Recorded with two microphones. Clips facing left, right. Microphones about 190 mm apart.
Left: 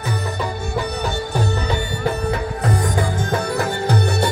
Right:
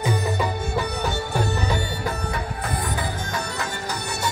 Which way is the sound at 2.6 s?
50° left (ahead or behind).